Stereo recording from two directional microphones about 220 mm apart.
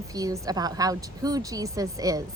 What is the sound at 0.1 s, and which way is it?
Speech, 15° right (ahead or behind).